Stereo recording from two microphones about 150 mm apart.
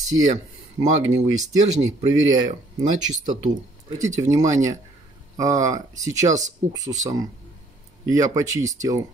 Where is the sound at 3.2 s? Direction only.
55° right (ahead or behind).